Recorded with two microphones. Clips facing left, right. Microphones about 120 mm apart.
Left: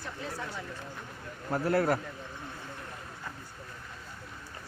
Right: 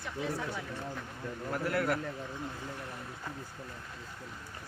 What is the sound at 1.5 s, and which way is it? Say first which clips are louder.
Speech: left 5 dB; 35° left (ahead or behind).